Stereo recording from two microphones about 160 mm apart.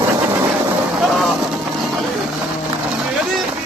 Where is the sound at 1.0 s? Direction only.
Centre (ahead or behind).